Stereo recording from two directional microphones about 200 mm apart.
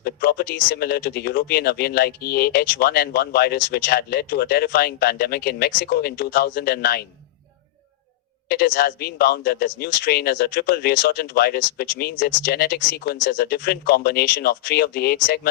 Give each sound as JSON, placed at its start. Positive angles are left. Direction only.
{"t": 0.0, "sound": "speech", "side_deg": 50}
{"t": 8.4, "sound": "speech", "side_deg": 50}